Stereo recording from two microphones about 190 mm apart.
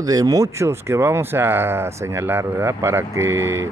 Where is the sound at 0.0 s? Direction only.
20° right (ahead or behind).